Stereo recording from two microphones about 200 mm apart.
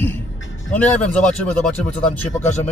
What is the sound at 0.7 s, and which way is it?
Speech, 5° left (ahead or behind).